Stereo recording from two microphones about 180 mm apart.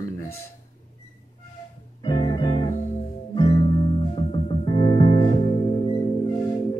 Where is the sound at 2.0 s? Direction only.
25° left (ahead or behind).